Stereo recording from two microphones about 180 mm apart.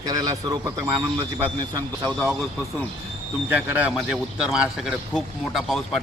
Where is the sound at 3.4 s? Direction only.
10° right (ahead or behind).